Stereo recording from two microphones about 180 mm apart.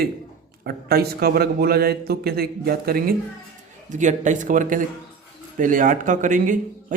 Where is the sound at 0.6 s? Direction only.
60° right (ahead or behind).